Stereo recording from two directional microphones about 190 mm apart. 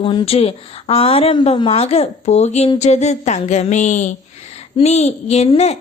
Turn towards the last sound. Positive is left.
turn(degrees=35)  # may be behind; listen again after turning